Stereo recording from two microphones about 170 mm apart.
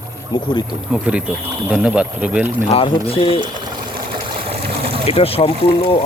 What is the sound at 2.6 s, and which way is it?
Speech, 35° left (ahead or behind).